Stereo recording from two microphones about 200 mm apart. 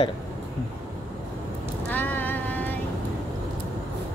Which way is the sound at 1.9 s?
10° left (ahead or behind).